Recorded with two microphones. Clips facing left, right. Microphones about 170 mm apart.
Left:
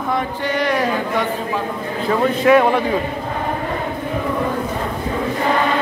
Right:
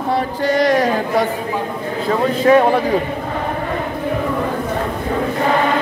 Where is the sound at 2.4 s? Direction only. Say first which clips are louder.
Right 2 dB; 35° right (ahead or behind).